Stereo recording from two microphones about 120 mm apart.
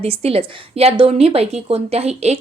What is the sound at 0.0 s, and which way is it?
A woman's voice, 55° right (ahead or behind).